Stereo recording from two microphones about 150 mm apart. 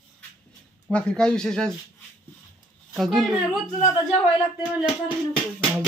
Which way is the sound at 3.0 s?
Centre (ahead or behind).